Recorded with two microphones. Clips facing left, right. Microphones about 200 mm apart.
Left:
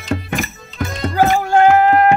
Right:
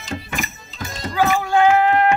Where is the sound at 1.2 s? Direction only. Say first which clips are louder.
Left 3 dB; 45° left (ahead or behind).